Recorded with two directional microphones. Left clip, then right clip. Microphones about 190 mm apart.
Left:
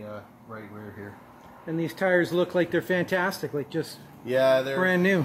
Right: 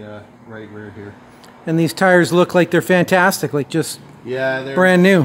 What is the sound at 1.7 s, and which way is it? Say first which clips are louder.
Speech: right 11 dB; 45° right (ahead or behind).